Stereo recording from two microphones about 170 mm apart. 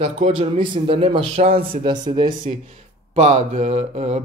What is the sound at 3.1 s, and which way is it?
Speech, 40° right (ahead or behind).